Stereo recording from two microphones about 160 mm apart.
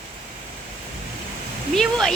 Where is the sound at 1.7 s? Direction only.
Centre (ahead or behind).